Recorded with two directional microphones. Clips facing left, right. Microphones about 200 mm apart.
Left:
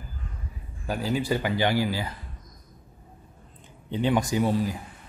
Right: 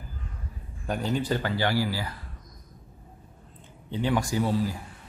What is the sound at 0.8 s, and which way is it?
Speech, 5° left (ahead or behind).